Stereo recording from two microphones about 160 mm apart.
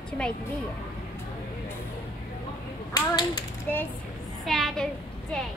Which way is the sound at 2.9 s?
25° left (ahead or behind).